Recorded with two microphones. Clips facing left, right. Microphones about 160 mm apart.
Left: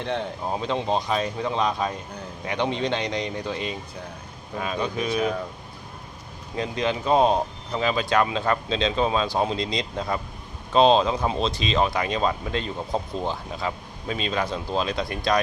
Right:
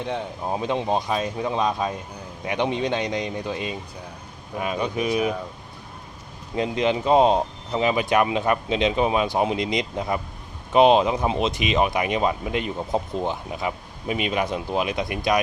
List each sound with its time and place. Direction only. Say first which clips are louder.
0.0 s speech: even; 10° right (ahead or behind)
4.6 s speech: right 2 dB; 15° right (ahead or behind)
6.6 s speech: right 4 dB; 20° right (ahead or behind)